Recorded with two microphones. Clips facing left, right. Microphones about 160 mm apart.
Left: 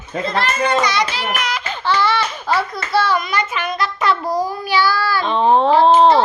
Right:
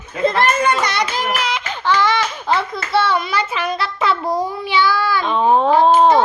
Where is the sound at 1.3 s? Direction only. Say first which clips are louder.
Right 1 dB; 25° right (ahead or behind).